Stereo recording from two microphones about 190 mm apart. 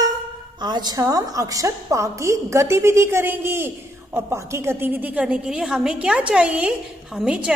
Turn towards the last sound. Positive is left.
turn(degrees=-5)  # may be behind; listen again after turning